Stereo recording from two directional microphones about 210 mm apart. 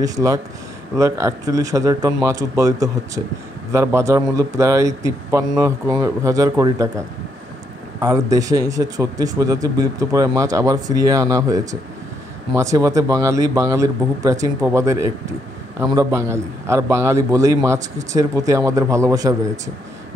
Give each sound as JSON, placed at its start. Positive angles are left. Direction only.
{"t": 0.0, "sound": "speech", "side_deg": -15}
{"t": 8.0, "sound": "speech", "side_deg": -15}